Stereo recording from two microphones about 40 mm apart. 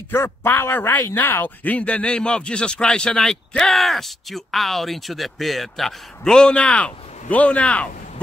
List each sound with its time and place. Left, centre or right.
0.1 s a man's voice: left
1.6 s a man's voice: left; by 3.7 s centre
3.7 s speech: centre
6.3 s a man's voice: left